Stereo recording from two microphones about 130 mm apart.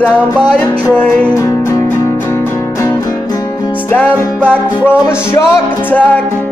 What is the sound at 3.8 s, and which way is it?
Music, 15° left (ahead or behind).